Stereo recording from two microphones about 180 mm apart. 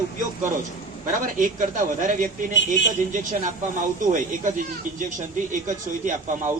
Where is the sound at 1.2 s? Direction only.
45° right (ahead or behind).